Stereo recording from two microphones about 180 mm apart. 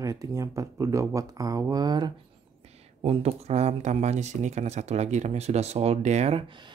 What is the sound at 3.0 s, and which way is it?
Speech, 35° right (ahead or behind).